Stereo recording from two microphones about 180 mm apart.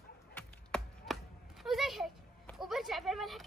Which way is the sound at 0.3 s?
5° left (ahead or behind).